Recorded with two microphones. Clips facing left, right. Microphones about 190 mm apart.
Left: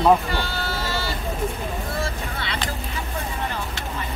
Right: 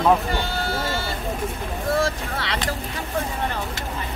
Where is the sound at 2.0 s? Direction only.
85° right.